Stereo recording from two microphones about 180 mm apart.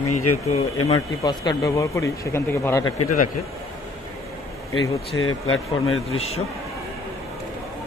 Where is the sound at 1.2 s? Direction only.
20° left (ahead or behind).